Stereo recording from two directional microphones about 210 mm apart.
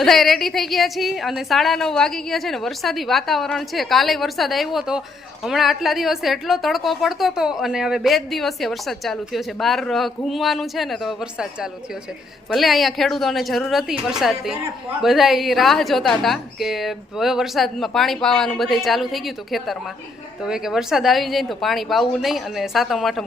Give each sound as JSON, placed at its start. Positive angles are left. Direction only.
{"t": 0.0, "sound": "a woman's voice", "side_deg": 0}